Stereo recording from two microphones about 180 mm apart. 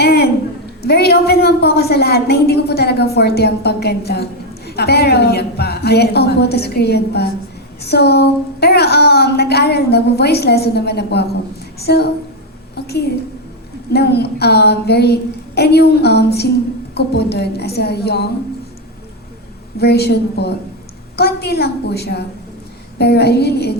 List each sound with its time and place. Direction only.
0.0 s a sound: 65° left (ahead or behind)
0.8 s a woman's voice: 65° left (ahead or behind)
13.9 s a woman's voice: 65° left (ahead or behind)
19.8 s a woman's voice: 65° left (ahead or behind)